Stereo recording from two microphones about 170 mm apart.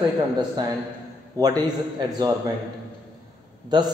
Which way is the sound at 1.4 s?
20° right (ahead or behind).